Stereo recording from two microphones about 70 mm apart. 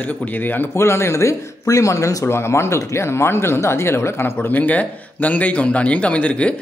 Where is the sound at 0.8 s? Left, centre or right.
Left.